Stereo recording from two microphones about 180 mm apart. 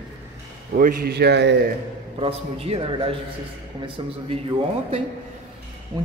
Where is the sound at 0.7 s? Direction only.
55° right (ahead or behind); by 1.6 s 75° right (ahead or behind).